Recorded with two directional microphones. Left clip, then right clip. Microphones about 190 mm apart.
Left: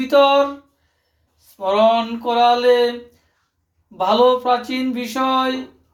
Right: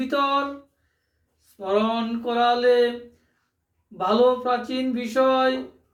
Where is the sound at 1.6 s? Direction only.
Centre (ahead or behind).